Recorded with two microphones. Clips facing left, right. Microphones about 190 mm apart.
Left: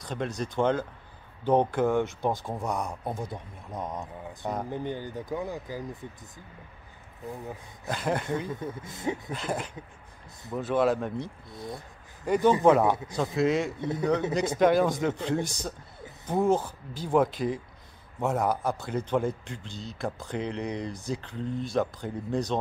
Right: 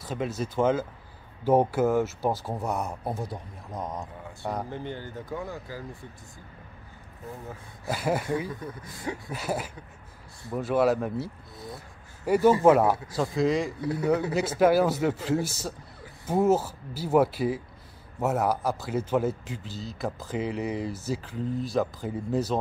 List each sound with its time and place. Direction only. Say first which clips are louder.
0.0 s a man's voice: right 1 dB; 5° right (ahead or behind)
4.6 s speech: left 3 dB; 15° left (ahead or behind)
7.8 s speech: right 2 dB; 5° right (ahead or behind)
8.5 s speech: left 2 dB; 25° left (ahead or behind)
9.3 s a man's voice: right 1 dB; 5° right (ahead or behind)